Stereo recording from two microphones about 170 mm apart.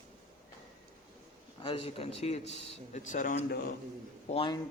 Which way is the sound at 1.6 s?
35° left (ahead or behind).